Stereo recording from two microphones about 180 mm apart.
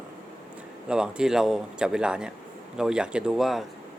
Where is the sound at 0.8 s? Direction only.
5° right (ahead or behind).